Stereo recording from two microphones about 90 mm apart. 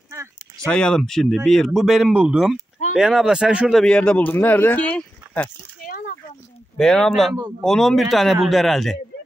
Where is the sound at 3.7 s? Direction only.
10° left (ahead or behind).